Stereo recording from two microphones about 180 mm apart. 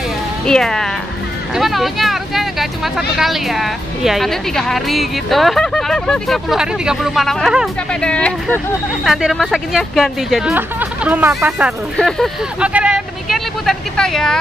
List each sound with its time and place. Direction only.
0.5 s speech: 5° left (ahead or behind)